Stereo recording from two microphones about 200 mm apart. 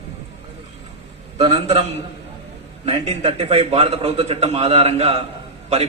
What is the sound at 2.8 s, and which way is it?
A man's voice, 30° right (ahead or behind).